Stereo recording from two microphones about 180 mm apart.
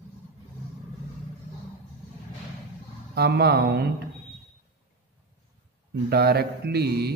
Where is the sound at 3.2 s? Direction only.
60° right (ahead or behind).